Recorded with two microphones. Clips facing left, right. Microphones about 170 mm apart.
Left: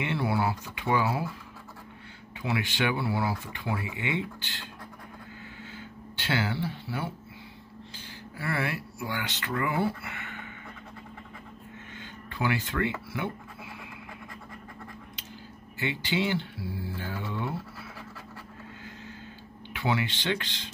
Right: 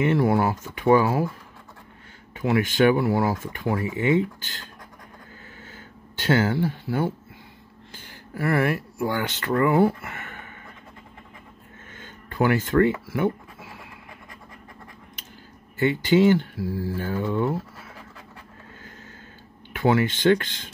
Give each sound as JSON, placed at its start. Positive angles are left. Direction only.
{"t": 0.0, "sound": "speech", "side_deg": -45}
{"t": 2.4, "sound": "speech", "side_deg": -45}
{"t": 6.1, "sound": "speech", "side_deg": -45}
{"t": 8.4, "sound": "speech", "side_deg": -50}
{"t": 12.0, "sound": "speech", "side_deg": -50}
{"t": 15.8, "sound": "speech", "side_deg": -50}
{"t": 19.7, "sound": "speech", "side_deg": -50}